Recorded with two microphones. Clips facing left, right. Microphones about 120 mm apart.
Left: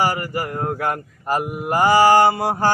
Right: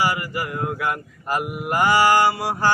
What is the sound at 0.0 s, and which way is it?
Mantra, 45° left (ahead or behind).